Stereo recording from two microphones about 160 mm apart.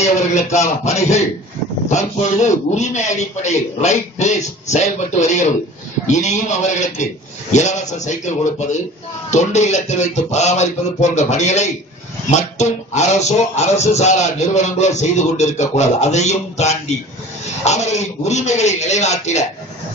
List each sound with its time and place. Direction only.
0.8 s speech: 45° left (ahead or behind)